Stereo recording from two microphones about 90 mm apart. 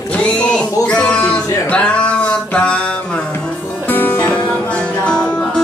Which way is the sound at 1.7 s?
15° left (ahead or behind).